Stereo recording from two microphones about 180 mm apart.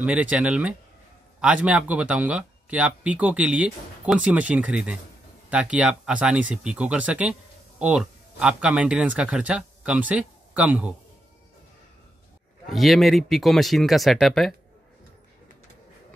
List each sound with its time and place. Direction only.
0.0 s speech: 5° right (ahead or behind)
12.6 s speech: centre (ahead or behind)